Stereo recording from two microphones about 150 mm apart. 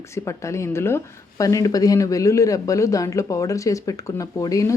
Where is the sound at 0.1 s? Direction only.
20° left (ahead or behind).